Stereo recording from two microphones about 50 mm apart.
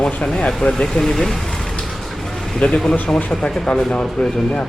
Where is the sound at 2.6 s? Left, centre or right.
Left.